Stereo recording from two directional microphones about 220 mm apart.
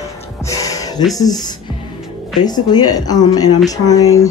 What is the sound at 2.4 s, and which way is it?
Speech, 20° left (ahead or behind).